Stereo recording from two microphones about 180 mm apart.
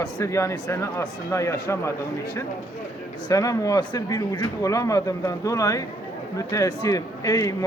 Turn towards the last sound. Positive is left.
turn(degrees=20)  # may be behind; listen again after turning